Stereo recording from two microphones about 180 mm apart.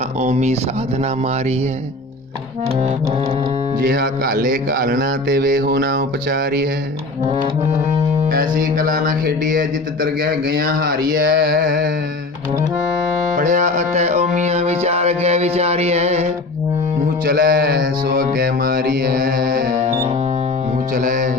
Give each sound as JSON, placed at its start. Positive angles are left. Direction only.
{"t": 0.2, "sound": "speech", "side_deg": -40}
{"t": 3.8, "sound": "music", "side_deg": -60}
{"t": 8.3, "sound": "music", "side_deg": -55}
{"t": 13.4, "sound": "music", "side_deg": -45}
{"t": 17.2, "sound": "music", "side_deg": -55}
{"t": 19.8, "sound": "music", "side_deg": -40}